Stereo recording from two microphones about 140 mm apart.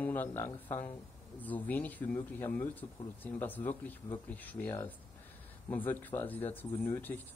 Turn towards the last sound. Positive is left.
turn(degrees=15)  # may be behind; listen again after turning